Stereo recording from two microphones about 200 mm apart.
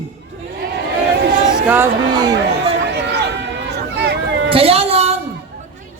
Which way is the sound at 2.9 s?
55° right (ahead or behind).